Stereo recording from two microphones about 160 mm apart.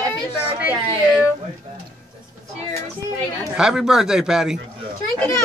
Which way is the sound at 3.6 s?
5° right (ahead or behind).